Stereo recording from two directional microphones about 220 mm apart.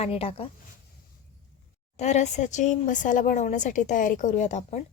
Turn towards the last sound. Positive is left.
turn(degrees=35)  # may be behind; listen again after turning